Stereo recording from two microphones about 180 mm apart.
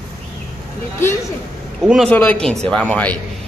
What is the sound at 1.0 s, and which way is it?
A man's voice, 15° left (ahead or behind).